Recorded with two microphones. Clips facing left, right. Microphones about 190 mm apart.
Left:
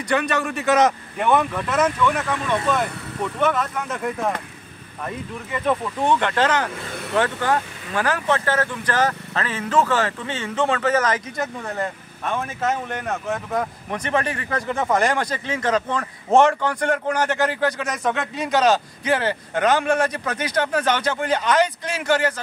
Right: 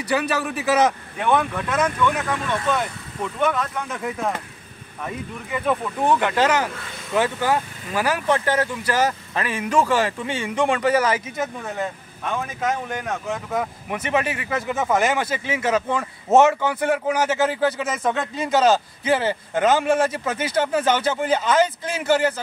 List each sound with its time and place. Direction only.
0.0 s speech: 5° right (ahead or behind)